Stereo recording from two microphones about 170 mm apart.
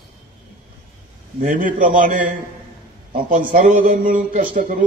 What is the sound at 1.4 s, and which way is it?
A man's voice, 50° right (ahead or behind).